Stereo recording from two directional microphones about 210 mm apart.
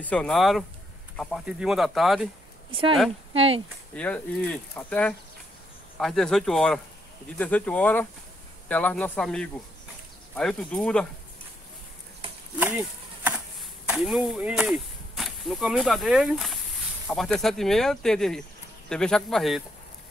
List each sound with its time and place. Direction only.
0.0 s speech: 5° left (ahead or behind)
2.7 s speech: 25° right (ahead or behind)
3.9 s speech: 5° left (ahead or behind)
12.5 s speech: 10° right (ahead or behind)